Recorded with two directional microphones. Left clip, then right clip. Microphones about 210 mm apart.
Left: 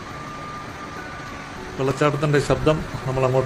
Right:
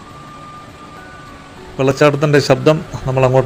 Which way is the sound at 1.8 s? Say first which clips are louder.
Right 9 dB; 25° right (ahead or behind).